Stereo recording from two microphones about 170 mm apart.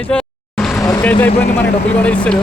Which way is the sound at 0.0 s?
5° left (ahead or behind).